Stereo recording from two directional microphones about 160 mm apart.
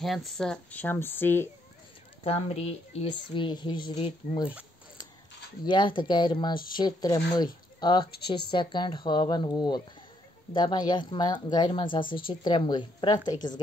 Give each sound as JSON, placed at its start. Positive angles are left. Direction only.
{"t": 0.0, "sound": "speech", "side_deg": 0}
{"t": 2.2, "sound": "speech", "side_deg": 40}
{"t": 5.7, "sound": "speech", "side_deg": 30}